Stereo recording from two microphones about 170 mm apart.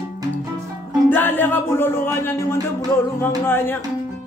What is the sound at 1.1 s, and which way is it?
Speech, 10° left (ahead or behind).